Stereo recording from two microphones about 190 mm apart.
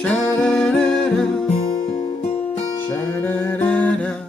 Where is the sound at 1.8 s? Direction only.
40° left (ahead or behind).